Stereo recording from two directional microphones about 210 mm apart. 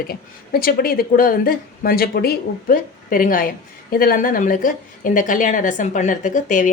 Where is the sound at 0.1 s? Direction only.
45° left (ahead or behind).